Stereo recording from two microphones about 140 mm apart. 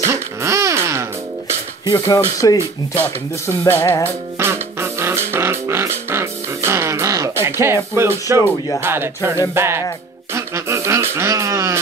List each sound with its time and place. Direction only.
0.0 s music: 20° right (ahead or behind)
2.0 s speech: 20° left (ahead or behind)
4.0 s speech: 15° right (ahead or behind)
8.8 s music: 15° right (ahead or behind)
10.3 s a sound: 20° right (ahead or behind)